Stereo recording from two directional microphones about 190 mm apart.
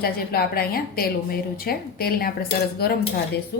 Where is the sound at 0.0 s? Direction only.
55° left (ahead or behind).